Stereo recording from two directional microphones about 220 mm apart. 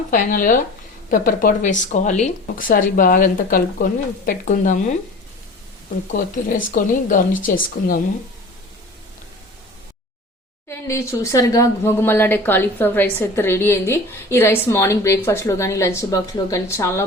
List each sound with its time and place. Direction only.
0.1 s speech: 40° left (ahead or behind)
6.1 s speech: 40° left (ahead or behind)
10.7 s speech: 10° left (ahead or behind)